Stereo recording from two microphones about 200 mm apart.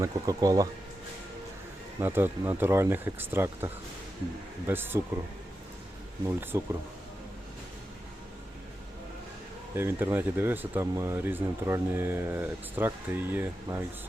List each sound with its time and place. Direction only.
0.0 s speech: 20° right (ahead or behind)
2.0 s speech: 10° right (ahead or behind)
6.2 s speech: 10° right (ahead or behind)
9.7 s speech: 10° right (ahead or behind)